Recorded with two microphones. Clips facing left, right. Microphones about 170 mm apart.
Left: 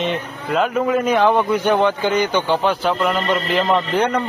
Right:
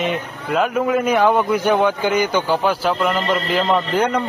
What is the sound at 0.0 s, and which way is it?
A man's voice, 5° right (ahead or behind).